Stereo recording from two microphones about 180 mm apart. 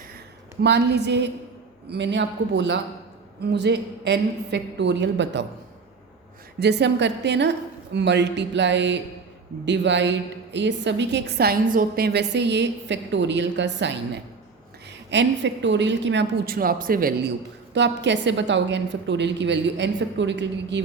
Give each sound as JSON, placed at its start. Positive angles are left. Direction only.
{"t": 0.6, "sound": "a woman's voice", "side_deg": -70}
{"t": 6.6, "sound": "a woman's voice", "side_deg": -70}
{"t": 16.6, "sound": "speech", "side_deg": -55}
{"t": 17.7, "sound": "a woman's voice", "side_deg": -80}